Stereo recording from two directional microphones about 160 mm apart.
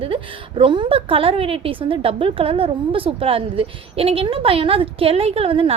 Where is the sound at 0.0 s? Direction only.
35° right (ahead or behind).